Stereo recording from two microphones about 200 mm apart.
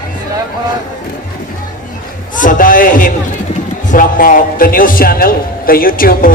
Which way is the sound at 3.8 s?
40° left (ahead or behind).